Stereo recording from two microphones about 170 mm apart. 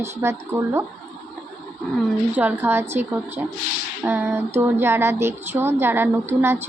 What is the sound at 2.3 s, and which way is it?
A woman's voice, 10° right (ahead or behind).